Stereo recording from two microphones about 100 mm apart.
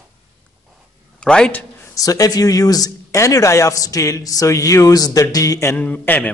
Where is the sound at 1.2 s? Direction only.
10° left (ahead or behind).